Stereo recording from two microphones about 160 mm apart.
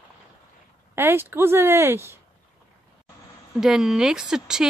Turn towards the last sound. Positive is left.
turn(degrees=-5)  # may be behind; listen again after turning